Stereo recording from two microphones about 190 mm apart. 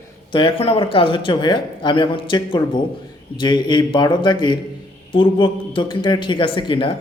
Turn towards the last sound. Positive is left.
turn(degrees=25)  # may be behind; listen again after turning